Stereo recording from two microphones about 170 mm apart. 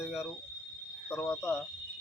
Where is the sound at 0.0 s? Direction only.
5° right (ahead or behind).